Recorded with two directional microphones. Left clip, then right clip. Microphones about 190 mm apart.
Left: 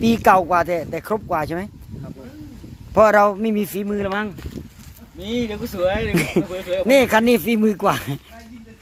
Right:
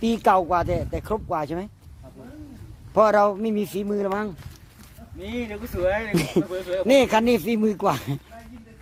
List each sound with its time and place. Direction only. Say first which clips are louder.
0.0 s speech: left 5 dB; 5° left (ahead or behind)
2.9 s speech: left 4 dB; 5° left (ahead or behind)
5.2 s speech: left 7 dB; 60° left (ahead or behind)
6.1 s speech: left 3 dB; 5° left (ahead or behind)